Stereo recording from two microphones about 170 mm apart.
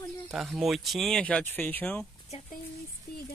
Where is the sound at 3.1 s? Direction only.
65° left (ahead or behind).